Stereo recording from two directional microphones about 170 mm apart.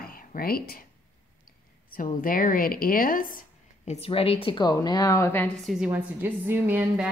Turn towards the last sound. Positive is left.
turn(degrees=-10)  # may be behind; listen again after turning